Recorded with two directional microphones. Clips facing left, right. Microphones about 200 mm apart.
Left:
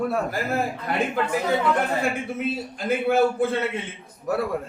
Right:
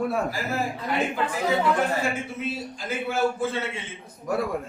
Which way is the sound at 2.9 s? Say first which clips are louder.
Left 5 dB; 60° left (ahead or behind).